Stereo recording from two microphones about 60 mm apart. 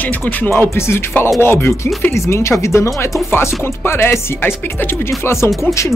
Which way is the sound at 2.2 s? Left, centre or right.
Left.